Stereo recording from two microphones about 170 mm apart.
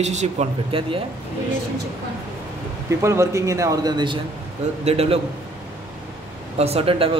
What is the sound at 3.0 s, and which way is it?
A man's voice, 15° right (ahead or behind).